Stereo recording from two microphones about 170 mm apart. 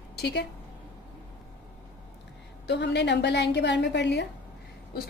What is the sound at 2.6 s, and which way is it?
A woman's voice, 90° left.